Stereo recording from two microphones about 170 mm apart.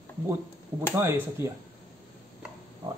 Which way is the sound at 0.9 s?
15° right (ahead or behind).